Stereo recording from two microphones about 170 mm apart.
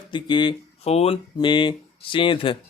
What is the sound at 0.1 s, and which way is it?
Speech, 25° left (ahead or behind).